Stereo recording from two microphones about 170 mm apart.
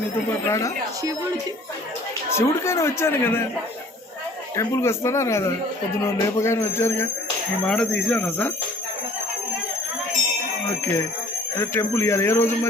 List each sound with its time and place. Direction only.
0.4 s a man's voice: 20° left (ahead or behind)
2.3 s a man's voice: 15° left (ahead or behind)
4.5 s a man's voice: 15° left (ahead or behind)
11.5 s a man's voice: 15° left (ahead or behind)